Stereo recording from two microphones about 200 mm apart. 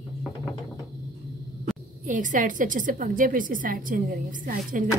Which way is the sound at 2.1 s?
40° right (ahead or behind).